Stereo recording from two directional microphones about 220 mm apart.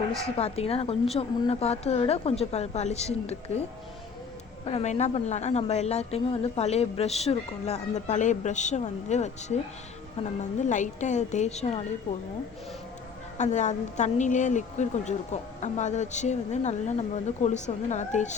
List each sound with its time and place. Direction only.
0.3 s a woman's voice: 25° left (ahead or behind)
4.6 s a woman's voice: 30° left (ahead or behind)
13.4 s a woman's voice: 30° left (ahead or behind)